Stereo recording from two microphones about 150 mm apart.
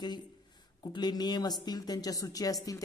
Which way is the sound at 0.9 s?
30° left (ahead or behind).